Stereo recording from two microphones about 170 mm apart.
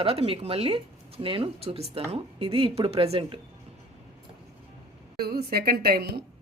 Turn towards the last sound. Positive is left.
turn(degrees=-65)  # may be behind; listen again after turning